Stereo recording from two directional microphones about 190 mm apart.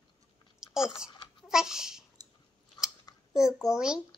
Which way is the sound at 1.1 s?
25° left (ahead or behind).